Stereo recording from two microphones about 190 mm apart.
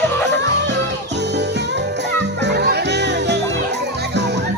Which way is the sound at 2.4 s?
60° right (ahead or behind).